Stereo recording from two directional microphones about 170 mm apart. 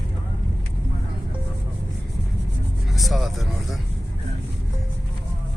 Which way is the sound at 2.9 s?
Centre (ahead or behind).